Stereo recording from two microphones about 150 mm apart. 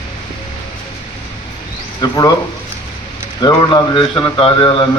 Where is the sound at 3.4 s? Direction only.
30° left (ahead or behind).